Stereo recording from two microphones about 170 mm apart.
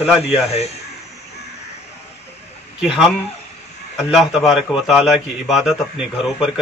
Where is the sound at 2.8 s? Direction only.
5° right (ahead or behind).